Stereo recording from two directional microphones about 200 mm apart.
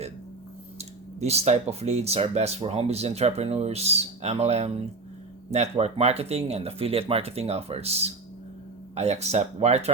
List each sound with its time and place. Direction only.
0.8 s speech: 30° right (ahead or behind)